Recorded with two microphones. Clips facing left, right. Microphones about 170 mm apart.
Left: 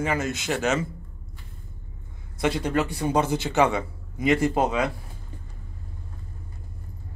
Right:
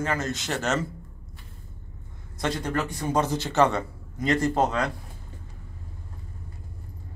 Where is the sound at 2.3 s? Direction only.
10° left (ahead or behind).